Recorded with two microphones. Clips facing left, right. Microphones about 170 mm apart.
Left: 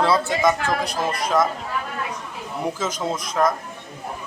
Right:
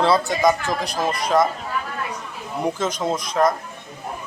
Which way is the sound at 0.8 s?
35° right (ahead or behind).